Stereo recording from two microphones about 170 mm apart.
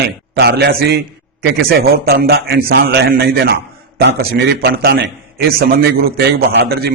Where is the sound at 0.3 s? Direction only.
70° right (ahead or behind).